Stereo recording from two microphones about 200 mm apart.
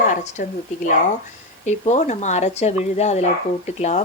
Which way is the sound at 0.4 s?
40° left (ahead or behind).